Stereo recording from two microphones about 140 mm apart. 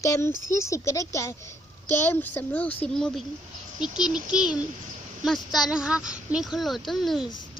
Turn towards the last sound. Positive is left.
turn(degrees=0)  # may be behind; listen again after turning